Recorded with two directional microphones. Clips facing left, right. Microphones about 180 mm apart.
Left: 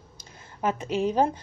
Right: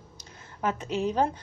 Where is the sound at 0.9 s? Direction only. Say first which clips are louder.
Left 3 dB; 10° left (ahead or behind).